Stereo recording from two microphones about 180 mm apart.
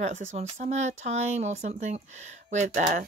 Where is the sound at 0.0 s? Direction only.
40° right (ahead or behind).